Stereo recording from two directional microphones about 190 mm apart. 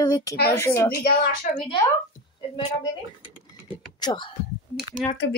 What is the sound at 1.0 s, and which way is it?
Speech, 50° left (ahead or behind).